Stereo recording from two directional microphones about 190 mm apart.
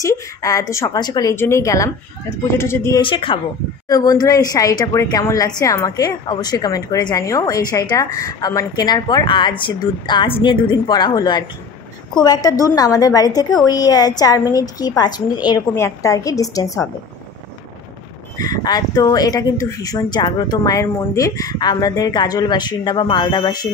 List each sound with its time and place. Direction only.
0.0 s speech: 15° left (ahead or behind)
3.0 s a woman's voice: 25° left (ahead or behind)
18.4 s a woman's voice: 20° left (ahead or behind)